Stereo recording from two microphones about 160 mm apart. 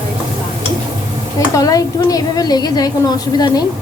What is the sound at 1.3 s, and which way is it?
A woman's voice, 20° left (ahead or behind).